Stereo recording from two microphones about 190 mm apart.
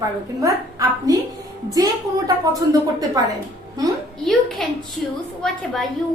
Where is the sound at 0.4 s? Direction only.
15° right (ahead or behind).